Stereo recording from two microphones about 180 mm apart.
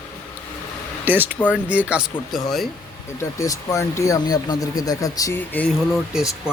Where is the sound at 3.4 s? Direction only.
15° left (ahead or behind).